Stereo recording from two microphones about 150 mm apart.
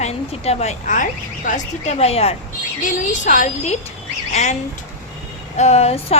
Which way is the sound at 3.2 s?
55° left (ahead or behind).